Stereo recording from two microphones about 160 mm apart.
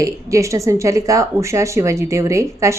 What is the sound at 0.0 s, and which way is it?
Speech, 20° right (ahead or behind).